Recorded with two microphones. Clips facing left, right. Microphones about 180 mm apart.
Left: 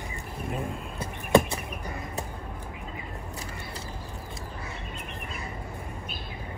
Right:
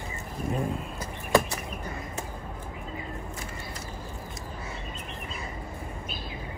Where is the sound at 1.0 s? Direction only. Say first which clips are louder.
Left 3 dB; 25° left (ahead or behind).